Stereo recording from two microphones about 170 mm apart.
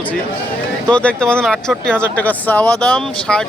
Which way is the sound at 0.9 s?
5° left (ahead or behind).